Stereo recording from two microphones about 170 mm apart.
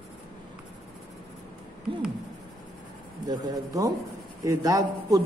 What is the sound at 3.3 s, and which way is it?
A man's voice, 20° right (ahead or behind).